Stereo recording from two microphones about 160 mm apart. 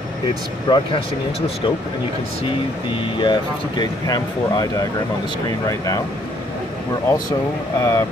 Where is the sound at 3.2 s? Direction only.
30° left (ahead or behind).